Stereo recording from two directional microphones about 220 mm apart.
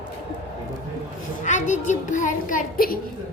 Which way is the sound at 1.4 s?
35° left (ahead or behind).